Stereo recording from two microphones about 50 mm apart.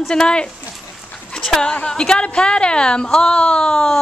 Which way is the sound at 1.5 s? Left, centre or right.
Centre.